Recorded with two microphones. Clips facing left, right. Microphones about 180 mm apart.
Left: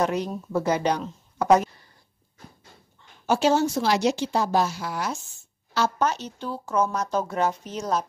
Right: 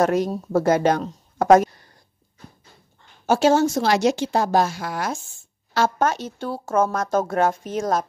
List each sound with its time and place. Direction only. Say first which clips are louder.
0.0 s speech: right 5 dB; 45° right (ahead or behind)
3.3 s speech: right 4 dB; 45° right (ahead or behind)